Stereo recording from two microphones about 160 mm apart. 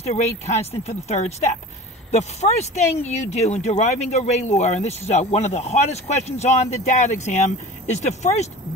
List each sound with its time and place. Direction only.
0.0 s speech: 40° left (ahead or behind)